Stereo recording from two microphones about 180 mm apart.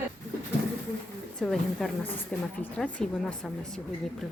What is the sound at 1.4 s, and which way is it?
A woman's voice, centre (ahead or behind).